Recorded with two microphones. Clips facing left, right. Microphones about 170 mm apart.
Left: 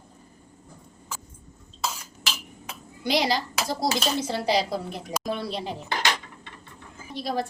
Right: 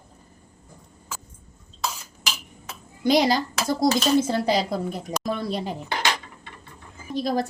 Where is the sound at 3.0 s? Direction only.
45° right (ahead or behind).